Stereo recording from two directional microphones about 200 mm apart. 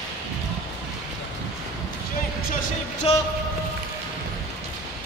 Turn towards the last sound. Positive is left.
turn(degrees=30)  # may be behind; listen again after turning